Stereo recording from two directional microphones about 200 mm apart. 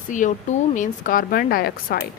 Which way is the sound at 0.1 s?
40° left (ahead or behind).